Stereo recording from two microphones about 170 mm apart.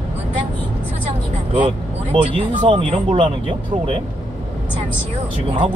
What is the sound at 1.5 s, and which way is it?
Speech, 30° right (ahead or behind).